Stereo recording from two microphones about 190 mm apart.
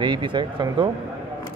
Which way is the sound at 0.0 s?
25° right (ahead or behind).